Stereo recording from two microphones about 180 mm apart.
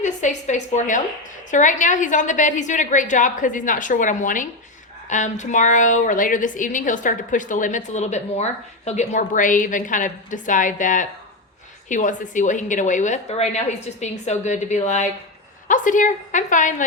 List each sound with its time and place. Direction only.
0.0 s a woman's voice: 40° left (ahead or behind)